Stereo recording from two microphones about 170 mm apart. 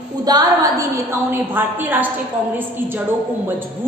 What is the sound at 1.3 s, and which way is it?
Speech, 10° right (ahead or behind).